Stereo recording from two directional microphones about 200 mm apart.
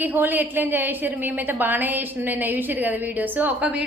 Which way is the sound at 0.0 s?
10° right (ahead or behind).